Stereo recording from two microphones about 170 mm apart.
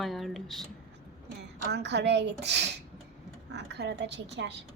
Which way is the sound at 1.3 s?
75° right (ahead or behind).